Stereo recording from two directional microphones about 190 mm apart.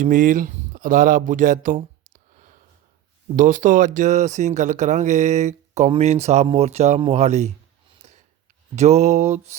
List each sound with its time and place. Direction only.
0.0 s speech: 45° right (ahead or behind)
7.9 s a sound: 35° right (ahead or behind)
8.7 s speech: 35° right (ahead or behind)